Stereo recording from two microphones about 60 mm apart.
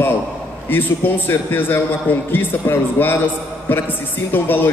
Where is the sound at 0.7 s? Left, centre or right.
Left.